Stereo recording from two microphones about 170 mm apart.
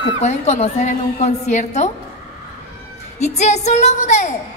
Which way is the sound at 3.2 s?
40° left (ahead or behind).